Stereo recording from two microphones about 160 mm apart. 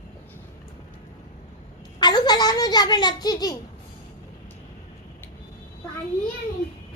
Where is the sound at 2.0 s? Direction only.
25° left (ahead or behind).